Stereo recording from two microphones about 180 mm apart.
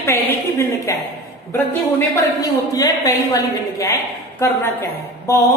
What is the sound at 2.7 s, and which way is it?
A woman's voice, 20° left (ahead or behind).